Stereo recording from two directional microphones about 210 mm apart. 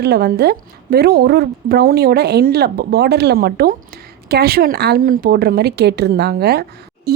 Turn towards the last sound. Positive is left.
turn(degrees=-50)  # may be behind; listen again after turning